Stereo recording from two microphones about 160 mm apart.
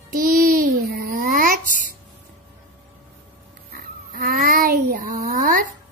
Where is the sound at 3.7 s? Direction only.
60° right (ahead or behind).